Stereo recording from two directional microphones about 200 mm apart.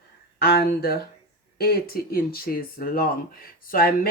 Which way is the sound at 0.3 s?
50° left (ahead or behind).